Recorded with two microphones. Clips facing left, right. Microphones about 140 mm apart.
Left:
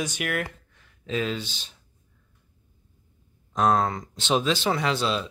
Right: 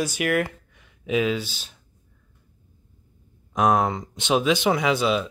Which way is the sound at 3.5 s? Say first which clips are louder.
Right 2 dB; 10° right (ahead or behind).